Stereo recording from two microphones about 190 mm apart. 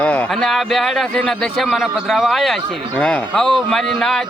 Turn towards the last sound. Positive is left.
turn(degrees=0)  # may be behind; listen again after turning